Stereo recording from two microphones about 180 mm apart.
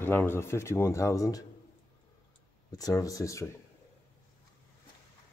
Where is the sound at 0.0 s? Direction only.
10° left (ahead or behind).